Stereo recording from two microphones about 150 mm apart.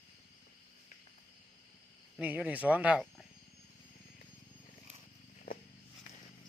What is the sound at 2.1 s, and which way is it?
Speech, 10° right (ahead or behind).